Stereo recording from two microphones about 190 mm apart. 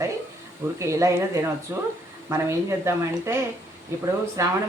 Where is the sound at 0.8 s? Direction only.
15° right (ahead or behind).